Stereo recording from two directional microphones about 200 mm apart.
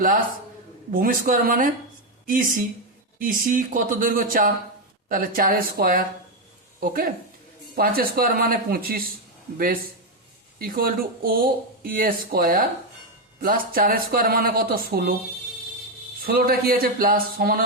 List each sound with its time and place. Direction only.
0.9 s speech: 45° right (ahead or behind)
16.2 s speech: 50° right (ahead or behind)